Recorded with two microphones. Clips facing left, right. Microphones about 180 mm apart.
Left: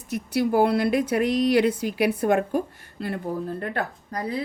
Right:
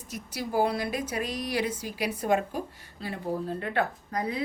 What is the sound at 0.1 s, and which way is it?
Speech, 60° left (ahead or behind).